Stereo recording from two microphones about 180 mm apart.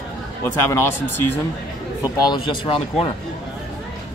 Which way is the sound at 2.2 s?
25° left (ahead or behind).